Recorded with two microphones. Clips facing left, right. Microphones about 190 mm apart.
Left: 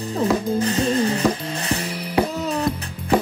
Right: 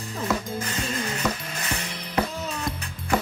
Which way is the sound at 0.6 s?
30° left (ahead or behind).